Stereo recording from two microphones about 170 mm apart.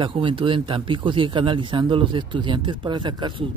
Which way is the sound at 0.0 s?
30° right (ahead or behind).